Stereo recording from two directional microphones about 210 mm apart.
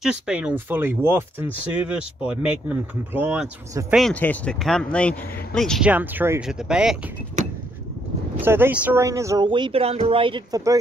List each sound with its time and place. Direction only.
0.0 s speech: 5° right (ahead or behind)
7.4 s vehicle: 35° right (ahead or behind)
8.4 s speech: 10° right (ahead or behind)